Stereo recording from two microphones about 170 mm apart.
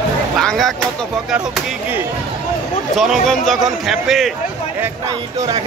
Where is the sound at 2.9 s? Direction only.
Centre (ahead or behind).